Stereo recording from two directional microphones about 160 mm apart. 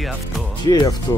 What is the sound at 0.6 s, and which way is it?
Speech, 25° left (ahead or behind).